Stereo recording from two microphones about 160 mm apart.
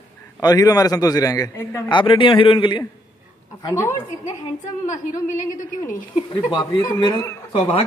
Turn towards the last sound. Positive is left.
turn(degrees=30)  # may be behind; listen again after turning